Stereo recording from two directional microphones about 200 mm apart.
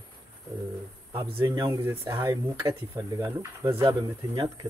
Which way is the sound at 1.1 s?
25° right (ahead or behind).